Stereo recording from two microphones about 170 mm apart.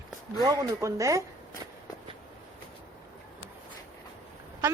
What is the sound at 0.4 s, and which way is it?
Speech, 20° right (ahead or behind).